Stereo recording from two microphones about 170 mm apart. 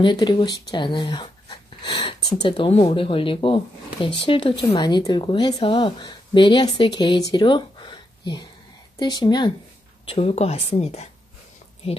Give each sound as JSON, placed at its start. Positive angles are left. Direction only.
{"t": 0.0, "sound": "speech", "side_deg": 25}